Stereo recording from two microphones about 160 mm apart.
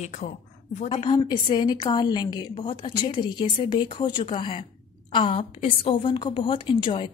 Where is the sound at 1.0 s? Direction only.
30° left (ahead or behind).